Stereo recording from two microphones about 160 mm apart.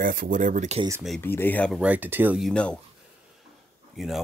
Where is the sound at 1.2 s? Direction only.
15° left (ahead or behind).